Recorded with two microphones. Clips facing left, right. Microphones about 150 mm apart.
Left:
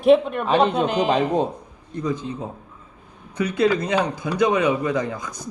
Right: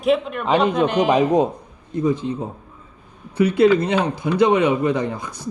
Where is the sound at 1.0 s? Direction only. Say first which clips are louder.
Right 5 dB; 10° right (ahead or behind).